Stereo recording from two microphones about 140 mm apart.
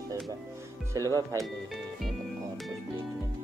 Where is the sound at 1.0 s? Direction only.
25° right (ahead or behind).